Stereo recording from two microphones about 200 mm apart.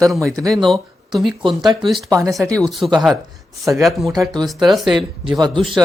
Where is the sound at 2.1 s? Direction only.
15° right (ahead or behind).